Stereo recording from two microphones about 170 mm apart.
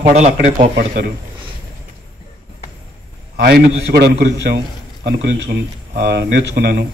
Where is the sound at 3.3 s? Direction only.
70° right (ahead or behind).